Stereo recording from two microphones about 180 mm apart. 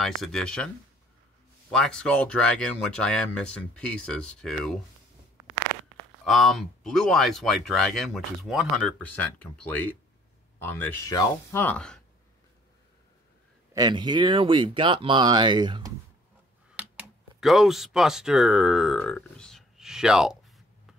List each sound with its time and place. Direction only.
0.0 s speech: centre (ahead or behind)
1.7 s speech: 5° left (ahead or behind)
6.2 s speech: centre (ahead or behind)
13.7 s speech: 25° right (ahead or behind)
16.7 s speech: 5° right (ahead or behind)